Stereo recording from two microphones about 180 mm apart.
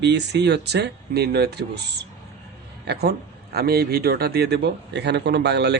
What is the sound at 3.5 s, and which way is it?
Speech, 60° right (ahead or behind).